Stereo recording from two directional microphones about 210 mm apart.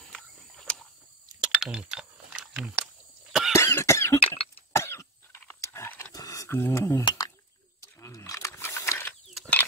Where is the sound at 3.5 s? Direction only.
15° left (ahead or behind).